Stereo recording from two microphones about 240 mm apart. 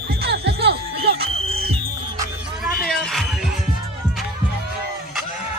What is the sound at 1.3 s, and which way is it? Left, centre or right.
Music, right.